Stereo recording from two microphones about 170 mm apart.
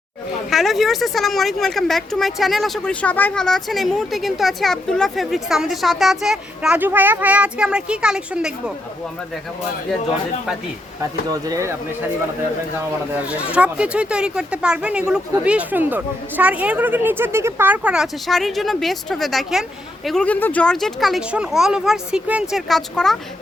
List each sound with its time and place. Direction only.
0.5 s speech: centre (ahead or behind)
11.3 s speech: 20° right (ahead or behind)
13.2 s speech: 5° right (ahead or behind)